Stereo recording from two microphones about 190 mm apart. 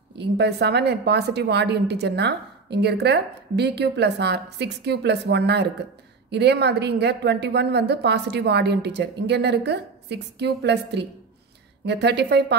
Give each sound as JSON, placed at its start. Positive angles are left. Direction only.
{"t": 0.2, "sound": "a woman's voice", "side_deg": -65}